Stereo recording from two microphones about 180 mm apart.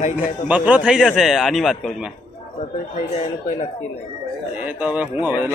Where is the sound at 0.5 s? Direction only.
5° right (ahead or behind).